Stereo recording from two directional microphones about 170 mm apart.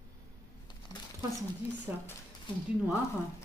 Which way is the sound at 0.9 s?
25° left (ahead or behind).